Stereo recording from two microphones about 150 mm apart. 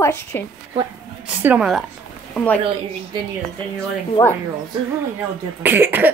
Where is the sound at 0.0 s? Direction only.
20° left (ahead or behind).